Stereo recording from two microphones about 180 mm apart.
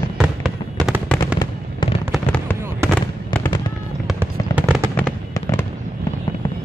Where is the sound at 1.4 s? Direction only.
25° left (ahead or behind).